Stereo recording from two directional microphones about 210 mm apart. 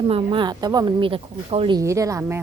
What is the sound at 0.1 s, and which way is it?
Speech, 25° right (ahead or behind).